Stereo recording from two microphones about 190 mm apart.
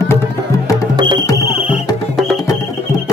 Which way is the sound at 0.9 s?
25° right (ahead or behind).